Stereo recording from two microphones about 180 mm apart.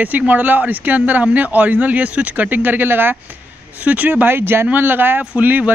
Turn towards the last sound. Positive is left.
turn(degrees=-10)  # may be behind; listen again after turning